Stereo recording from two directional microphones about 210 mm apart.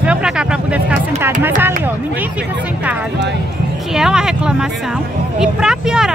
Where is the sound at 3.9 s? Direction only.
5° right (ahead or behind).